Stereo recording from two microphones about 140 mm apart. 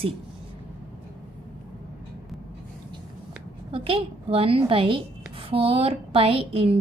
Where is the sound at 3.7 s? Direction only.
40° right (ahead or behind).